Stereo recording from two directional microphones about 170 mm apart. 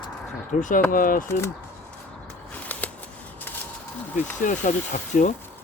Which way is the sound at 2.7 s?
10° left (ahead or behind).